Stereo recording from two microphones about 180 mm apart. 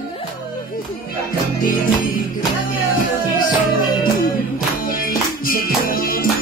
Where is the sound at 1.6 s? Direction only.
50° left (ahead or behind).